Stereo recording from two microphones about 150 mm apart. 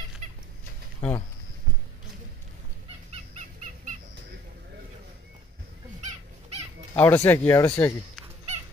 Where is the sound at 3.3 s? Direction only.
50° right (ahead or behind).